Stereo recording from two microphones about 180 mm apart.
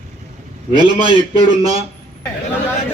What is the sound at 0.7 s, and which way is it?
Speech, 25° right (ahead or behind).